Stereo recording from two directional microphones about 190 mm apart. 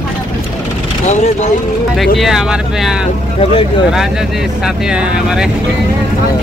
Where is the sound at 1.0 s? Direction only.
35° left (ahead or behind).